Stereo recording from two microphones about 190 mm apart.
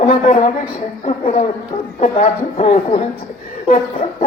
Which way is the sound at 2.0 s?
40° left (ahead or behind).